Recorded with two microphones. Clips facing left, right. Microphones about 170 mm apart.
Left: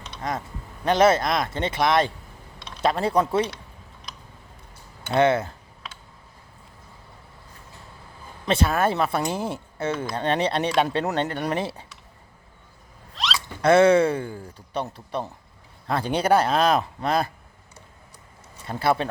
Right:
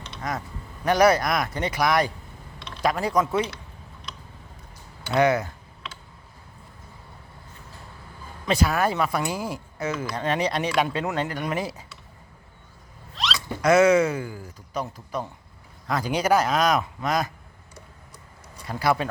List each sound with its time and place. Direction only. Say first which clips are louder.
0.2 s speech: left 1 dB; 25° left (ahead or behind)
5.1 s speech: left 1 dB; 25° left (ahead or behind)
8.4 s speech: left 1 dB; 25° left (ahead or behind)
13.2 s a sound: even; centre (ahead or behind)
13.6 s speech: left 1 dB; 30° left (ahead or behind)
18.7 s speech: left 1 dB; 25° left (ahead or behind)